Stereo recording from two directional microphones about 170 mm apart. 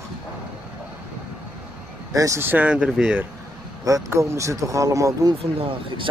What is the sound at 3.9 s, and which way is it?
Speech, 20° right (ahead or behind).